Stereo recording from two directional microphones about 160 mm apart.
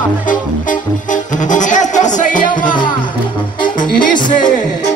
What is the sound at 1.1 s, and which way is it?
Music, 50° left (ahead or behind).